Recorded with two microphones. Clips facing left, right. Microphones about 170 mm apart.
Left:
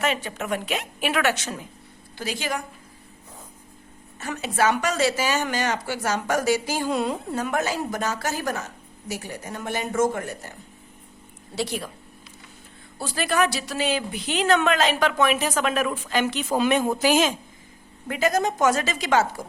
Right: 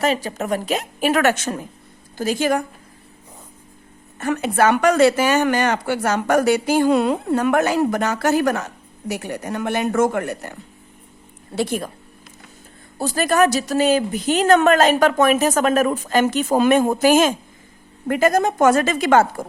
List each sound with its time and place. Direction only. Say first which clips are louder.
0.0 s a woman's voice: right 5 dB; 35° right (ahead or behind)
4.2 s speech: right 6 dB; 55° right (ahead or behind)
11.5 s speech: right 6 dB; 50° right (ahead or behind)
13.0 s speech: right 6 dB; 45° right (ahead or behind)